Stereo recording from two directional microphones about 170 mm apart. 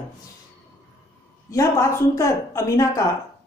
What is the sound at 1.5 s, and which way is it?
Speech, 15° left (ahead or behind).